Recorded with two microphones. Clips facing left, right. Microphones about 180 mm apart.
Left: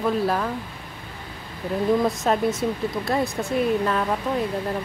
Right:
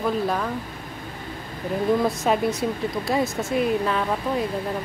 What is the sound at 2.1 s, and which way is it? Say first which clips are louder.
Speech: even; centre (ahead or behind).